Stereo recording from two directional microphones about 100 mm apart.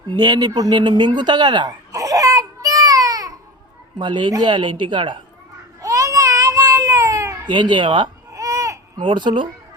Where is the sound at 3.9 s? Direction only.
50° right (ahead or behind).